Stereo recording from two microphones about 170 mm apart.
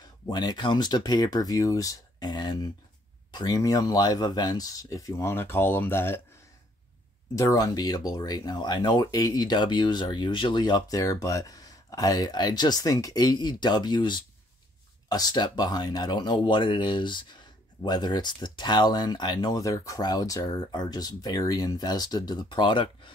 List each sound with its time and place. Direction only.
0.3 s speech: 25° left (ahead or behind)
7.3 s speech: 20° left (ahead or behind)